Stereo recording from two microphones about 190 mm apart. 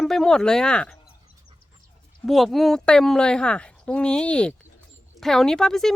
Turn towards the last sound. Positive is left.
turn(degrees=0)  # may be behind; listen again after turning